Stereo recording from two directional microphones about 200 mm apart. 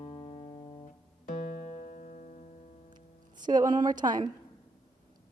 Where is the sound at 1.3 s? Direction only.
40° left (ahead or behind).